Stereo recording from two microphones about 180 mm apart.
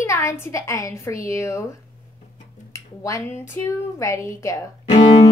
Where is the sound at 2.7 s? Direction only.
15° left (ahead or behind).